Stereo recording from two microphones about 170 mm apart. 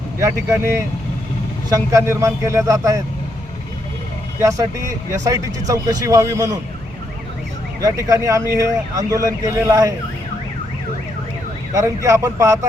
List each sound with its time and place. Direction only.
0.2 s speech: 15° right (ahead or behind)
4.4 s speech: 20° right (ahead or behind)
7.8 s speech: 20° right (ahead or behind)
11.7 s speech: 20° right (ahead or behind)